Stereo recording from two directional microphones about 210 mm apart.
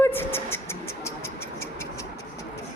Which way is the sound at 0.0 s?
10° left (ahead or behind).